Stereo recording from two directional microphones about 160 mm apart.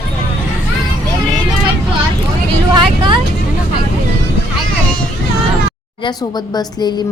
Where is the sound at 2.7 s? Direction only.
30° right (ahead or behind).